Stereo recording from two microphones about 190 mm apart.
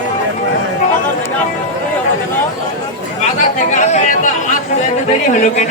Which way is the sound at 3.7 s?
40° left (ahead or behind).